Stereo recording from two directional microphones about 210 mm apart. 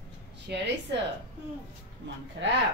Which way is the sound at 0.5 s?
55° right (ahead or behind).